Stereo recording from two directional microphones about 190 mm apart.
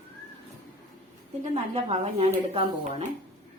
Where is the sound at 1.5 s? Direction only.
35° right (ahead or behind).